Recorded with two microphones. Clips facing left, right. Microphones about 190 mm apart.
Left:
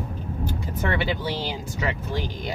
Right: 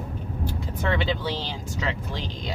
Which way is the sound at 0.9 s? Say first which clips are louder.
Even; 10° left (ahead or behind).